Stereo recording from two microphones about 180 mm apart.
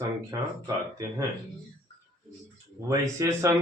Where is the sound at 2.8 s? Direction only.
15° right (ahead or behind).